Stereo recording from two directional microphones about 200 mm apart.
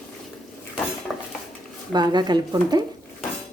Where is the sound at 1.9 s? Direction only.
20° right (ahead or behind).